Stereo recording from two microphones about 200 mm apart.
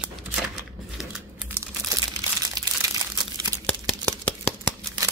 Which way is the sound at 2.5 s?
20° right (ahead or behind).